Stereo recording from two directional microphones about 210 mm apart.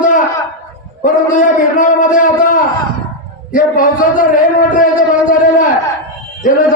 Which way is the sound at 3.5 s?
40° left (ahead or behind).